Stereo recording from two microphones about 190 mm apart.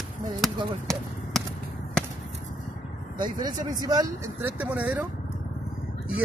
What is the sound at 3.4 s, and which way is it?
Speech, 20° right (ahead or behind).